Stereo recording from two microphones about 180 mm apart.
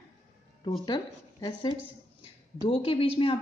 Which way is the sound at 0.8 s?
25° left (ahead or behind).